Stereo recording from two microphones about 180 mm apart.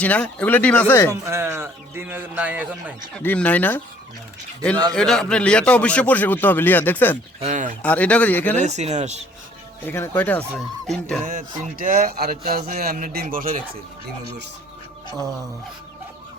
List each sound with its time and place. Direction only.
0.0 s a man's voice: 5° left (ahead or behind)
1.1 s a man's voice: 15° right (ahead or behind)
3.2 s a man's voice: 5° left (ahead or behind)
4.9 s a man's voice: 5° left (ahead or behind)
7.4 s speech: 40° right (ahead or behind)
7.8 s a man's voice: 5° left (ahead or behind)
8.5 s speech: 40° right (ahead or behind)
9.8 s a man's voice: 15° left (ahead or behind)
11.3 s speech: 50° right (ahead or behind)